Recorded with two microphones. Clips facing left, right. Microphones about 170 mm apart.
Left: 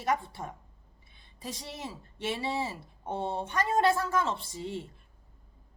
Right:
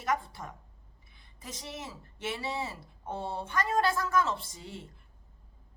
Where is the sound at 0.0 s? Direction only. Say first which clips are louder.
Left 2 dB; 25° left (ahead or behind).